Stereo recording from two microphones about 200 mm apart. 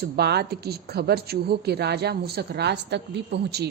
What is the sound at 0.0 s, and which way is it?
A woman's voice, 55° right (ahead or behind).